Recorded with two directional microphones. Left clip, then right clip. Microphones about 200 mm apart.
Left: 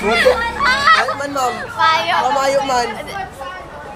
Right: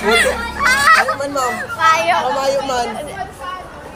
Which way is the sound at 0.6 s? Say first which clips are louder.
Right 5 dB; 5° right (ahead or behind).